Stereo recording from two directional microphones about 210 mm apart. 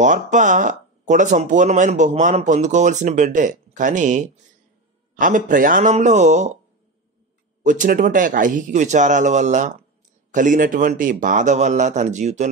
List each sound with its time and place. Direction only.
0.0 s speech: 35° right (ahead or behind)
7.6 s speech: 40° right (ahead or behind)